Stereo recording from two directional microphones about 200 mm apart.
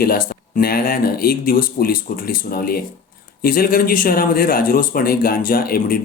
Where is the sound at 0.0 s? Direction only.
45° left (ahead or behind).